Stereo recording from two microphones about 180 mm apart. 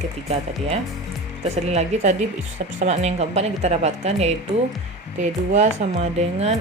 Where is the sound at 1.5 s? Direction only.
35° right (ahead or behind).